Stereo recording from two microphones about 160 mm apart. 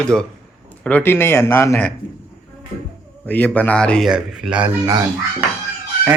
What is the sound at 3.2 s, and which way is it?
A man's voice, 10° left (ahead or behind).